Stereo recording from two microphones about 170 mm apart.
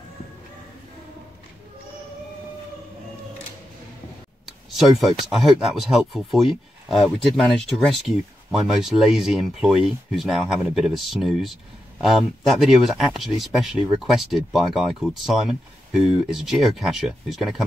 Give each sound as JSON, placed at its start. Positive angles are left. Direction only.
{"t": 4.7, "sound": "speech", "side_deg": 0}